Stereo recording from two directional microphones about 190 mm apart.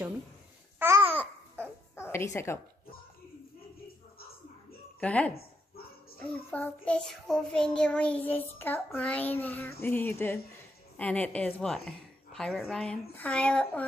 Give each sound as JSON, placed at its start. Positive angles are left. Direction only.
{"t": 0.7, "sound": "babbling", "side_deg": -10}
{"t": 2.0, "sound": "a woman's voice", "side_deg": 15}
{"t": 5.0, "sound": "child singing", "side_deg": 5}
{"t": 6.5, "sound": "child singing", "side_deg": 10}
{"t": 11.0, "sound": "a woman's voice", "side_deg": 5}